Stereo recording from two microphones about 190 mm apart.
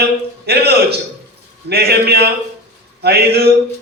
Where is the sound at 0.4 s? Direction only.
60° right (ahead or behind).